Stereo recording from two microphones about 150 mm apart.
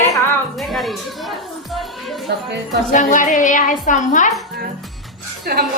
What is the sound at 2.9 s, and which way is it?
A woman's voice, 55° left (ahead or behind).